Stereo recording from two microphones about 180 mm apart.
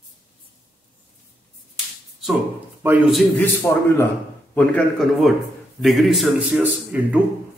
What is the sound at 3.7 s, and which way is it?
A man's voice, 15° left (ahead or behind).